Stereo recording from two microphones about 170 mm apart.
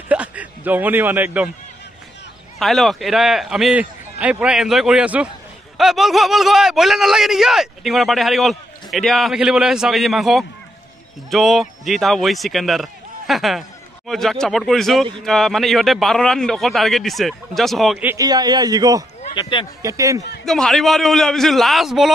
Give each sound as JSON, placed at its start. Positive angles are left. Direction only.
{"t": 0.1, "sound": "a man's voice", "side_deg": -10}
{"t": 2.6, "sound": "a man's voice", "side_deg": 0}
{"t": 18.0, "sound": "a man's voice", "side_deg": -20}
{"t": 19.3, "sound": "speech", "side_deg": 25}
{"t": 19.8, "sound": "a man's voice", "side_deg": -20}
{"t": 20.4, "sound": "a man's voice", "side_deg": 5}